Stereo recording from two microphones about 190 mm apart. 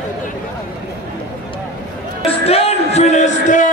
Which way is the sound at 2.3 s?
30° left (ahead or behind).